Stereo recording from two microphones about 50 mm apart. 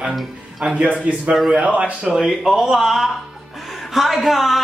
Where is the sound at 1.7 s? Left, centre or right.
Right.